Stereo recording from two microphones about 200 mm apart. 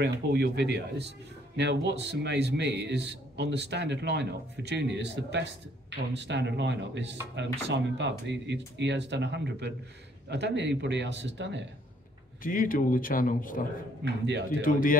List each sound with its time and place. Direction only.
0.0 s a man's voice: 55° right (ahead or behind)
12.4 s speech: 45° left (ahead or behind)
14.0 s a man's voice: 60° right (ahead or behind)
14.6 s speech: 45° left (ahead or behind)